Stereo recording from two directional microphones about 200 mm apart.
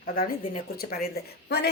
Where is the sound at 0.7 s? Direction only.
50° left (ahead or behind).